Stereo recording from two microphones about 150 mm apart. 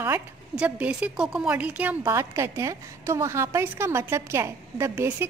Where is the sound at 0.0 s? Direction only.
10° right (ahead or behind).